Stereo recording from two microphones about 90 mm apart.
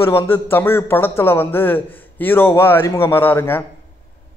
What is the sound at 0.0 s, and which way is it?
A man's voice, 25° left (ahead or behind).